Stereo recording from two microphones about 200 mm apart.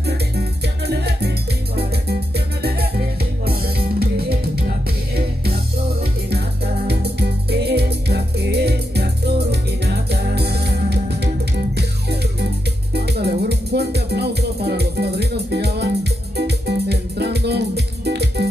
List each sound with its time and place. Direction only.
0.0 s music: 55° right (ahead or behind)